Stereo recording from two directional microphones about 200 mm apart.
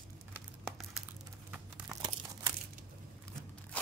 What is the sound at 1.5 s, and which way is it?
Crumpling, 15° right (ahead or behind).